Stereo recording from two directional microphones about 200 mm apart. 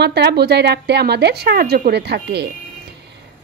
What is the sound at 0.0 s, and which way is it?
A woman's voice, 55° right (ahead or behind).